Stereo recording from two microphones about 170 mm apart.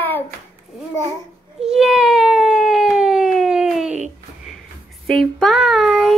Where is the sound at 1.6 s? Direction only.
5° right (ahead or behind).